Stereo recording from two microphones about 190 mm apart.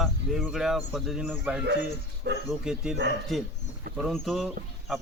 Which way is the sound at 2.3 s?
60° right (ahead or behind).